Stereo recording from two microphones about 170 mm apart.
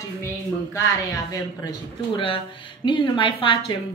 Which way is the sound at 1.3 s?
25° left (ahead or behind).